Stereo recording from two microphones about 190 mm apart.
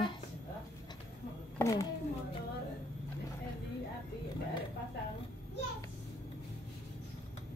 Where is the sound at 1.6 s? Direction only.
15° left (ahead or behind).